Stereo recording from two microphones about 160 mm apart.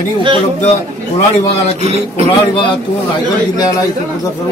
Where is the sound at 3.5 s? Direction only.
20° left (ahead or behind).